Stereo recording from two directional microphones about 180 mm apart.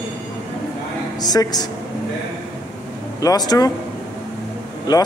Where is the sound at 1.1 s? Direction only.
20° left (ahead or behind).